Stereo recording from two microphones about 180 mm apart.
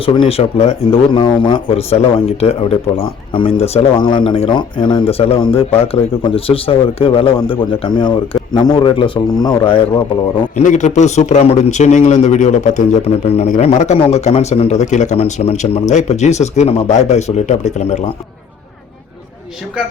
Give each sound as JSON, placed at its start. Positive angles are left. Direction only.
{"t": 0.0, "sound": "a man's voice", "side_deg": 30}
{"t": 10.6, "sound": "a man's voice", "side_deg": 40}